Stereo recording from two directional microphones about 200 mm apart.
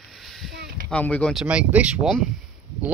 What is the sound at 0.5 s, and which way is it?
Speech, 55° right (ahead or behind).